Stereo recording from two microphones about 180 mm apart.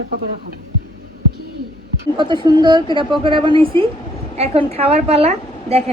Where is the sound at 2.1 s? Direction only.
25° right (ahead or behind).